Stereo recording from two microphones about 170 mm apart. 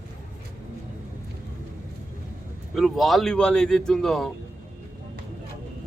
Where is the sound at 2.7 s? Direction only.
Centre (ahead or behind).